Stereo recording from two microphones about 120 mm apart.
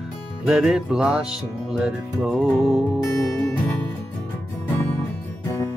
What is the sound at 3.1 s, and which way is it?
Music, 25° left (ahead or behind).